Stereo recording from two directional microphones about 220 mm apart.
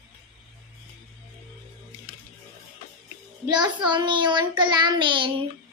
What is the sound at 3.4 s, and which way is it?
Child singing, 20° right (ahead or behind).